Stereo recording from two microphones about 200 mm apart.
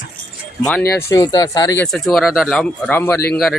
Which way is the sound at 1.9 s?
Centre (ahead or behind).